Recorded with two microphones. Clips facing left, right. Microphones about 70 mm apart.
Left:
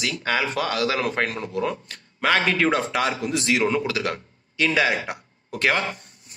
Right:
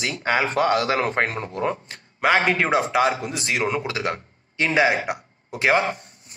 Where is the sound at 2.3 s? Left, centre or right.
Centre.